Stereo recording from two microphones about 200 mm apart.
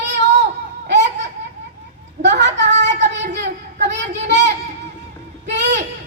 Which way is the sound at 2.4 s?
60° right (ahead or behind).